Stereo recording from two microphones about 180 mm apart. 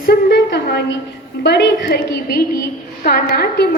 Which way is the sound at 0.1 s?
70° left (ahead or behind).